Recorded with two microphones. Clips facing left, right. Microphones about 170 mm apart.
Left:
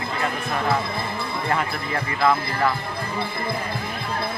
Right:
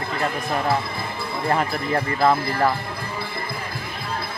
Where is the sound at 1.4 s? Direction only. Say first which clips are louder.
Right 4 dB; 35° right (ahead or behind).